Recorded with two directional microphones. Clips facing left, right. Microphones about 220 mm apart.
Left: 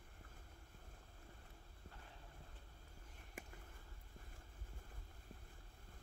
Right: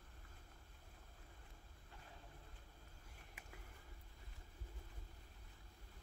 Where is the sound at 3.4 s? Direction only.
50° left (ahead or behind).